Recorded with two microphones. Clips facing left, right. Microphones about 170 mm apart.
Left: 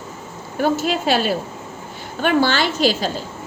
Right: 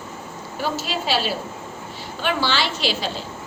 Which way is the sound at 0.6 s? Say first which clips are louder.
Left 7 dB; 50° left (ahead or behind).